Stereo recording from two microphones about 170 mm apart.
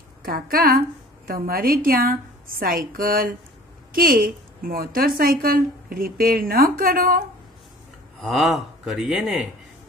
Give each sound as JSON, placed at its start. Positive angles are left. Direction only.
{"t": 0.2, "sound": "a woman's voice", "side_deg": -60}
{"t": 8.9, "sound": "speech", "side_deg": 0}